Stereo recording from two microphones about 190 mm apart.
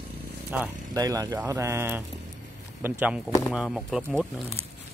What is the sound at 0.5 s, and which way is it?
Speech, 10° right (ahead or behind).